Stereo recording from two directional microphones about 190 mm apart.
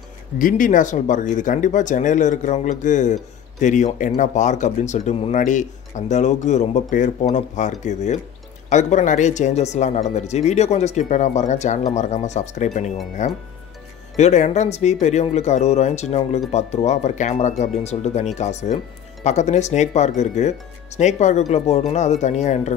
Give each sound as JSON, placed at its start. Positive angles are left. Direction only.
{"t": 0.4, "sound": "speech", "side_deg": 45}